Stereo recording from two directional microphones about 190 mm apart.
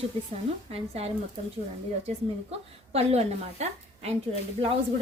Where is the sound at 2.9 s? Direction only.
35° right (ahead or behind).